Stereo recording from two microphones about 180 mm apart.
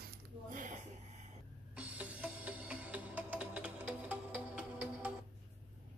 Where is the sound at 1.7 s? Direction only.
5° right (ahead or behind).